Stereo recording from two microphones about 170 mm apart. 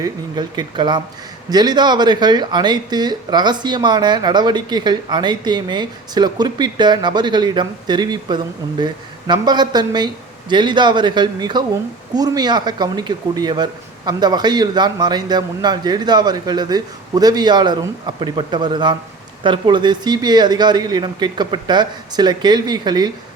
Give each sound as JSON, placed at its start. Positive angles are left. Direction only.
{"t": 0.0, "sound": "speech", "side_deg": -25}